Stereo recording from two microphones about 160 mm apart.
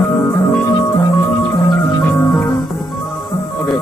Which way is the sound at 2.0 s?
15° left (ahead or behind).